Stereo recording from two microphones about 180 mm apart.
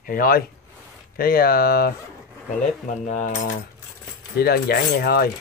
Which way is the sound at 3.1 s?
40° left (ahead or behind).